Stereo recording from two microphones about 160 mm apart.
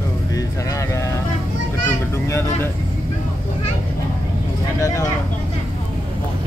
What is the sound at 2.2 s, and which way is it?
Speech, 15° left (ahead or behind).